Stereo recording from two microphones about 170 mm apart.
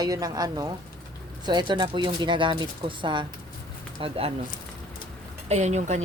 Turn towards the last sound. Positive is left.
turn(degrees=-40)  # may be behind; listen again after turning